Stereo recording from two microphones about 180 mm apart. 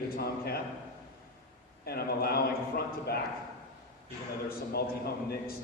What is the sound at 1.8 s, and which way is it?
Speech, 60° left (ahead or behind).